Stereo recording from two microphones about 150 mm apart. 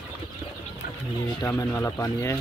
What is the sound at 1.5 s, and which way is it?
Speech, 15° left (ahead or behind).